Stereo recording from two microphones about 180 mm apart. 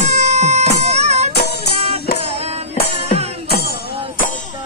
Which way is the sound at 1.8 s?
35° right (ahead or behind).